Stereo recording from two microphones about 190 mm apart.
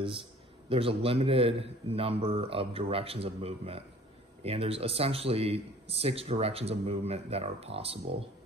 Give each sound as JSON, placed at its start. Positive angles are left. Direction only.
{"t": 0.0, "sound": "speech", "side_deg": -30}